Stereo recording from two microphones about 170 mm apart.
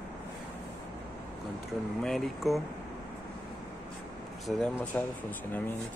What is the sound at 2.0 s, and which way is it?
Speech, centre (ahead or behind).